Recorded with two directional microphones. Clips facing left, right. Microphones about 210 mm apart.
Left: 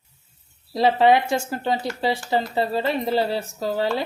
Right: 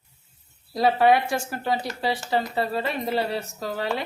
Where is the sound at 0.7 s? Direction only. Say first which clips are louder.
Left 2 dB; 25° left (ahead or behind).